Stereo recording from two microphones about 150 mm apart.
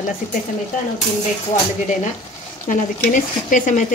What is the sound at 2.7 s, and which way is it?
Speech, 65° left (ahead or behind).